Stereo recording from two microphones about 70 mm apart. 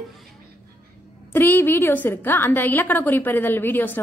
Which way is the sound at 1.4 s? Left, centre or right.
Left.